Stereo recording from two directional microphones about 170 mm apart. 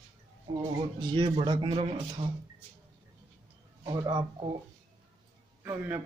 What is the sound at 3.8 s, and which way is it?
Speech, 25° right (ahead or behind).